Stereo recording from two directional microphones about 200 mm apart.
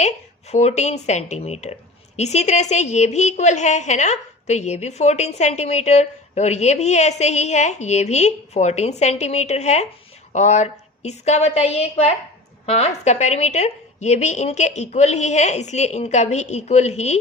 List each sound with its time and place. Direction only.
0.0 s a woman's voice: 35° left (ahead or behind)